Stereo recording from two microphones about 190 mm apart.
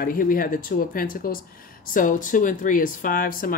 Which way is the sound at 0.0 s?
50° left (ahead or behind).